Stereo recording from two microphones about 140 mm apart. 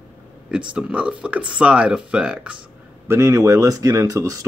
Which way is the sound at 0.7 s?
5° right (ahead or behind).